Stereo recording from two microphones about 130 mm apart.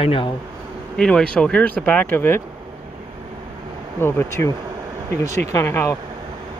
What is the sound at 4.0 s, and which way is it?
Speech, 15° left (ahead or behind).